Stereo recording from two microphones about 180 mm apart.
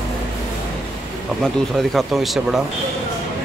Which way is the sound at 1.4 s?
Centre (ahead or behind).